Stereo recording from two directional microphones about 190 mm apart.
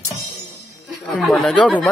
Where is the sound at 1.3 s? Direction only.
Centre (ahead or behind).